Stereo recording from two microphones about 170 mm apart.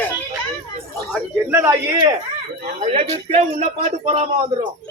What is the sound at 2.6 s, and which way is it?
Speech, 40° right (ahead or behind).